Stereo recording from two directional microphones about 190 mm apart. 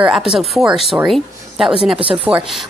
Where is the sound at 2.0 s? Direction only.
30° right (ahead or behind).